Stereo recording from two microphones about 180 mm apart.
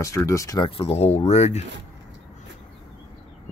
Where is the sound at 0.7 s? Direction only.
30° left (ahead or behind).